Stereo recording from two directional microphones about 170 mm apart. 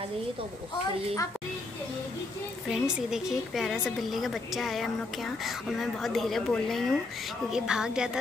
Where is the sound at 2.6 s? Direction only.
5° right (ahead or behind).